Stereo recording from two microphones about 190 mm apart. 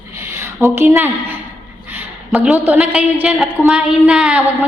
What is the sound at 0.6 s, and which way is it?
Speech, 15° right (ahead or behind).